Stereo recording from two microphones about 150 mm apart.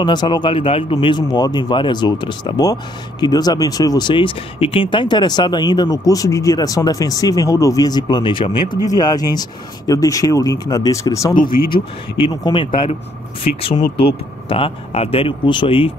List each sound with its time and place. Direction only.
0.0 s a man's voice: 30° left (ahead or behind)
12.2 s speech: 35° left (ahead or behind)